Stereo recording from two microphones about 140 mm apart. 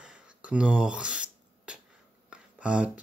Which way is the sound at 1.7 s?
5° right (ahead or behind).